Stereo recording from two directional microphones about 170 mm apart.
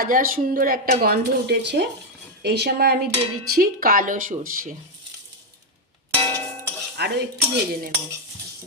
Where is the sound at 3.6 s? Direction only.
55° right (ahead or behind).